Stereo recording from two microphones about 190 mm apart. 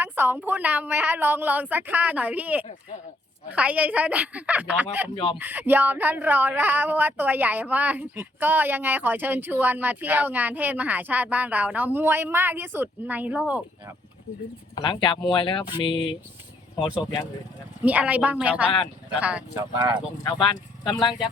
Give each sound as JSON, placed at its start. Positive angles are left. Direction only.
{"t": 0.0, "sound": "speech", "side_deg": -10}
{"t": 5.1, "sound": "speech", "side_deg": 25}
{"t": 5.4, "sound": "speech", "side_deg": -10}
{"t": 14.8, "sound": "speech", "side_deg": 25}
{"t": 17.8, "sound": "speech", "side_deg": -10}
{"t": 19.5, "sound": "speech", "side_deg": -20}
{"t": 20.9, "sound": "speech", "side_deg": 25}